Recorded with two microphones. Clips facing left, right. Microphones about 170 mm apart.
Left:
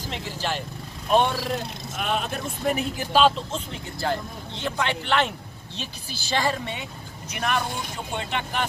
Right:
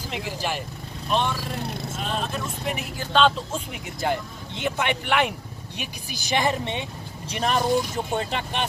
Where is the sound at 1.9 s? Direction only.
60° left (ahead or behind).